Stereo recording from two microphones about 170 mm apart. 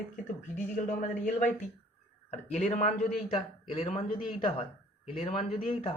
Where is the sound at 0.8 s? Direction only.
50° left (ahead or behind).